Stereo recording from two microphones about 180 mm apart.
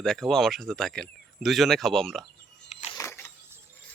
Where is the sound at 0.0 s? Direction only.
Centre (ahead or behind).